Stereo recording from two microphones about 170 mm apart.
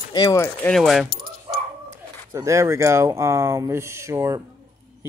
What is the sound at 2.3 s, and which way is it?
Speech, 15° right (ahead or behind).